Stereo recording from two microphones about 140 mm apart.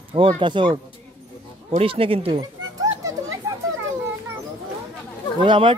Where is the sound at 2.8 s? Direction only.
25° right (ahead or behind).